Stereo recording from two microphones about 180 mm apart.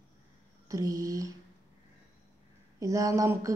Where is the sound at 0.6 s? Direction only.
20° right (ahead or behind).